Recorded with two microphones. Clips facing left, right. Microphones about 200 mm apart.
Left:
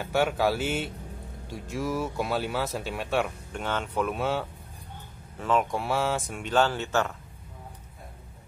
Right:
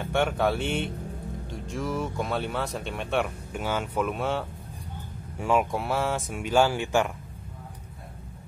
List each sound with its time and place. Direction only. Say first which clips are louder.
0.0 s speech: even; 5° left (ahead or behind)
5.4 s speech: right 1 dB; 10° right (ahead or behind)